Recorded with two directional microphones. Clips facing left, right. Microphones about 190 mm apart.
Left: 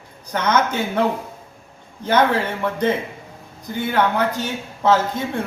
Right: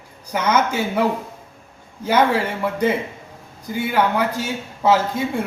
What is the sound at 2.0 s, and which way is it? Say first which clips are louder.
A man's voice: even; 10° right (ahead or behind).